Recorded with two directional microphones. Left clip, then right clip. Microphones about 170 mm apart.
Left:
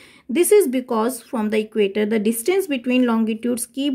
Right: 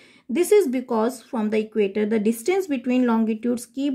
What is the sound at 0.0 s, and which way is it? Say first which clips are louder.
Speech: left 4 dB; 20° left (ahead or behind).